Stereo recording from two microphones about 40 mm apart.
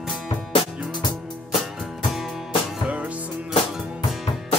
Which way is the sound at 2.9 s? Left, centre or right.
Right.